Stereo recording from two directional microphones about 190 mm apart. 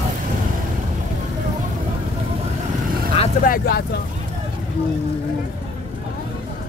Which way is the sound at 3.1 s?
35° left (ahead or behind).